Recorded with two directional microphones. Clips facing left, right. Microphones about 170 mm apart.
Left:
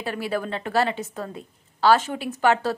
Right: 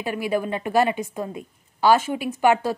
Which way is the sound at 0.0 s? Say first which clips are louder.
Right 3 dB; 10° right (ahead or behind).